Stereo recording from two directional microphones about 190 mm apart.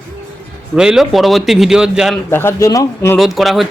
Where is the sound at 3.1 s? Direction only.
Centre (ahead or behind).